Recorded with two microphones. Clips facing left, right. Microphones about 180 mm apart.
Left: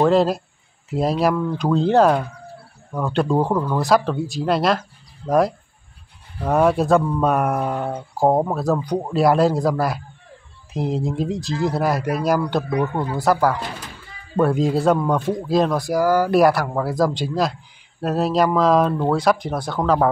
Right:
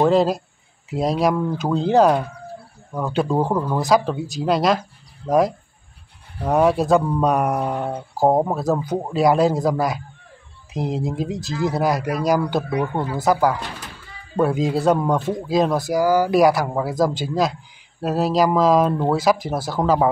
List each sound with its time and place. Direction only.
0.1 s speech: centre (ahead or behind)